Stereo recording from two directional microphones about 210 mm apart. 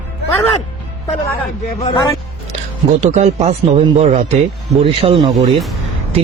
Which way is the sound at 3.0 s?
35° right (ahead or behind).